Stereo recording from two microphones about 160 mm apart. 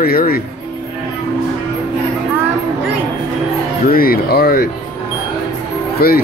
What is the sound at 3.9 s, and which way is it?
Speech, 70° left (ahead or behind).